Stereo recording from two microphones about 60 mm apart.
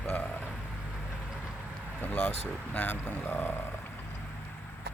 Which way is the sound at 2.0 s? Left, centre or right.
Left.